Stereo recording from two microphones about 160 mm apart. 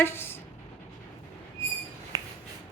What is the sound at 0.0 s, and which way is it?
Speech, 15° left (ahead or behind).